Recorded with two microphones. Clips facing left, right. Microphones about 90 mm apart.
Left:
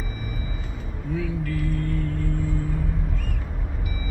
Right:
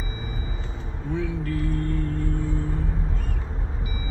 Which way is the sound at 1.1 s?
35° right (ahead or behind).